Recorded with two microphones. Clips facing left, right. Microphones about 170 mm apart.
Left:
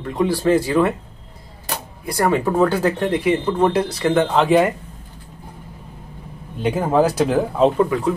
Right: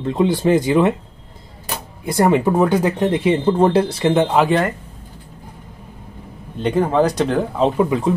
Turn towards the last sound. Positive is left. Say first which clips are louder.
# left 1 dB
turn(degrees=-5)  # may be behind; listen again after turning